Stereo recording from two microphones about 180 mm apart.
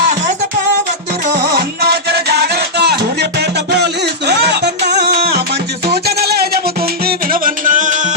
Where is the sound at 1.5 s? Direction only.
60° right (ahead or behind).